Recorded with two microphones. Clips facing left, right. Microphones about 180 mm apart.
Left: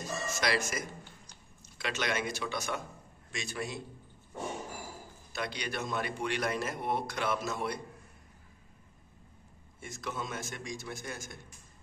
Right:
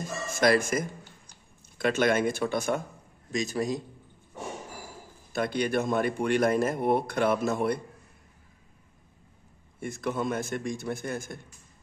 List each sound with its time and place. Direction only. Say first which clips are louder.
0.0 s music: right 8 dB; 50° right (ahead or behind)
1.8 s a man's voice: right 10 dB; 50° right (ahead or behind)
3.3 s a man's voice: right 10 dB; 40° right (ahead or behind)
5.3 s a man's voice: right 10 dB; 50° right (ahead or behind)
9.8 s a man's voice: right 9 dB; 55° right (ahead or behind)